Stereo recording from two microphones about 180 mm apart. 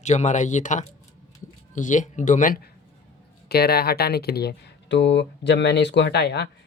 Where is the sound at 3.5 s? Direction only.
60° left (ahead or behind).